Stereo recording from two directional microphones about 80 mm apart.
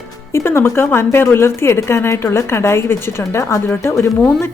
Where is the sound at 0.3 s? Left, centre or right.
Left.